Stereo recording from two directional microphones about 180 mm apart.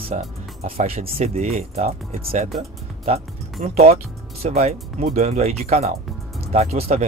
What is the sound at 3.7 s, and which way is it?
Speech, 35° right (ahead or behind).